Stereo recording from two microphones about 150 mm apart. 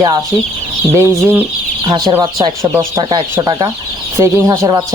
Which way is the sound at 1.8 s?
30° right (ahead or behind).